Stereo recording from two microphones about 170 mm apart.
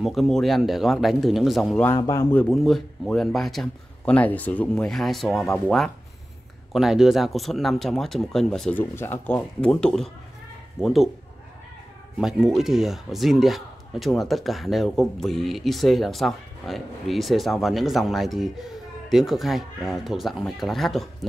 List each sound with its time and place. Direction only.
0.0 s speech: centre (ahead or behind)
1.9 s speech: 20° left (ahead or behind)
2.3 s speech: centre (ahead or behind)
12.2 s speech: centre (ahead or behind)